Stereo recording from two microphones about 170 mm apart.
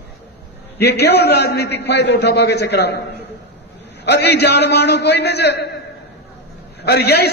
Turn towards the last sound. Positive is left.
turn(degrees=70)  # may be behind; listen again after turning